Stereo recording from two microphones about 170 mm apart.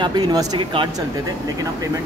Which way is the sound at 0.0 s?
25° right (ahead or behind).